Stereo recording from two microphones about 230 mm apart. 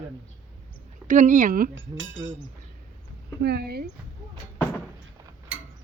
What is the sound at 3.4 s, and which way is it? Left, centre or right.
Speech, right.